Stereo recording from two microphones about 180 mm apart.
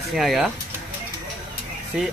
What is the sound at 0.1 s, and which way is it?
Speech, centre (ahead or behind).